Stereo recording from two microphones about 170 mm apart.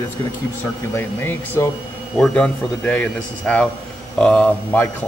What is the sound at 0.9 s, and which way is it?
Speech, 15° left (ahead or behind).